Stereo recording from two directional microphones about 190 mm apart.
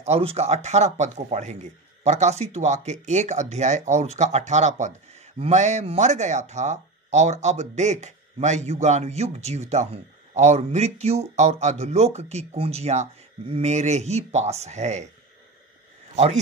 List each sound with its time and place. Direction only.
0.0 s speech: 30° right (ahead or behind)